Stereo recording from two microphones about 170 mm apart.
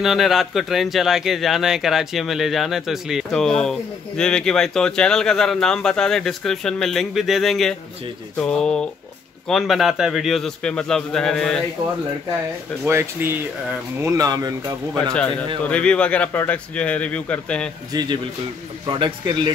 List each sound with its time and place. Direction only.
0.0 s speech: centre (ahead or behind)
12.8 s speech: 15° right (ahead or behind)
15.6 s speech: 5° left (ahead or behind)
17.9 s speech: 20° right (ahead or behind)